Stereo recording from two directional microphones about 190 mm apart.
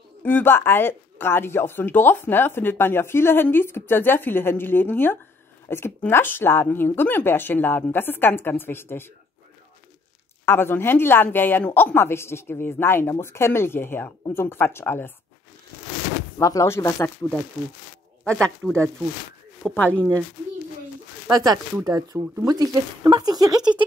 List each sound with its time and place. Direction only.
0.2 s speech: 10° left (ahead or behind)
10.4 s speech: 10° left (ahead or behind)
16.3 s speech: 15° left (ahead or behind)
19.6 s speech: 5° left (ahead or behind)
21.3 s speech: 20° right (ahead or behind)